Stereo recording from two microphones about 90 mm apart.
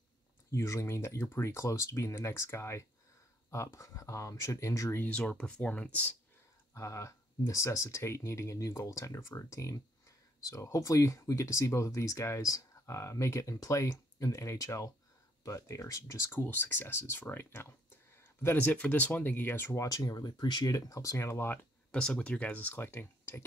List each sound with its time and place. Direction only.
0.5 s speech: 35° left (ahead or behind)
5.0 s speech: 15° left (ahead or behind)
6.7 s speech: 35° left (ahead or behind)
16.3 s speech: 20° left (ahead or behind); by 20.7 s 55° left (ahead or behind)
20.7 s speech: 40° left (ahead or behind)
21.9 s speech: 10° left (ahead or behind)